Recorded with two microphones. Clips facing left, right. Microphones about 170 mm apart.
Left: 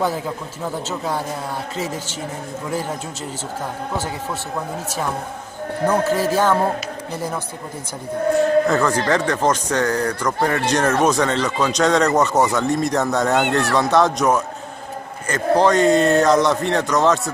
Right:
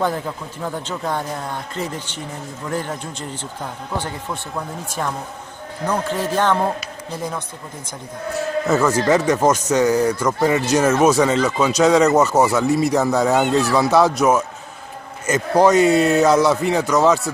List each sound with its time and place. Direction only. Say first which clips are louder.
0.8 s speech: even; 5° left (ahead or behind)
3.9 s speech: right 1 dB; 5° left (ahead or behind)
5.9 s speech: left 3 dB; 10° left (ahead or behind)
8.6 s speech: right 1 dB; 5° right (ahead or behind)
13.5 s speech: right 2 dB; 65° left (ahead or behind)
13.7 s speech: right 1 dB; 5° right (ahead or behind)